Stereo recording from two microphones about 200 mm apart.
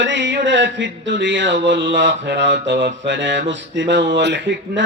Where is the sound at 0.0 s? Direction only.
65° right (ahead or behind).